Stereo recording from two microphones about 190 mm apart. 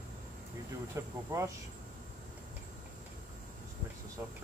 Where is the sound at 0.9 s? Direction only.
15° right (ahead or behind).